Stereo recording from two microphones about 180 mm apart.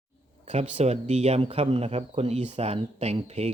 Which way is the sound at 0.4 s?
40° right (ahead or behind).